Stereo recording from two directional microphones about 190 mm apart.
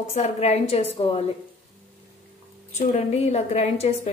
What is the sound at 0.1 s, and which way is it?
A woman's voice, 35° left (ahead or behind).